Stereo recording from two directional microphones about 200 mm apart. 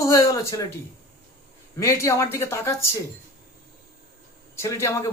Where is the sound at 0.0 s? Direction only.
15° left (ahead or behind).